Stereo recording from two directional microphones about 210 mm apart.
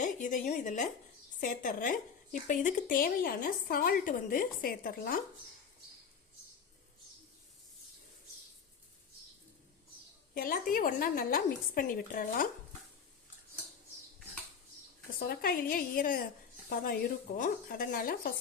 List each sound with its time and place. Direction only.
0.0 s speech: 35° left (ahead or behind)
10.3 s speech: 45° left (ahead or behind)
15.2 s speech: 45° left (ahead or behind)